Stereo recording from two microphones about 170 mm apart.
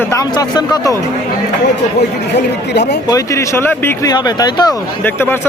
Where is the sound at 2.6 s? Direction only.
80° left.